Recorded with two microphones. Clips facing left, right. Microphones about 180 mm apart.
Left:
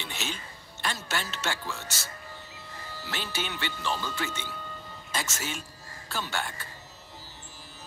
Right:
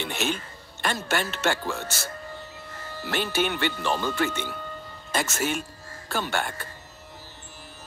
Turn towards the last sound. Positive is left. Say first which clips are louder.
# right 5 dB
turn(degrees=-55)  # may be behind; listen again after turning